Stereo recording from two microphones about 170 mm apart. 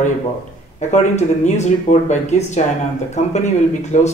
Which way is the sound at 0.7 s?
40° left (ahead or behind).